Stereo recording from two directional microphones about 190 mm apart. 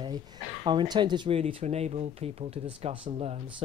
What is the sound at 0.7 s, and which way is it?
Speech, 25° right (ahead or behind).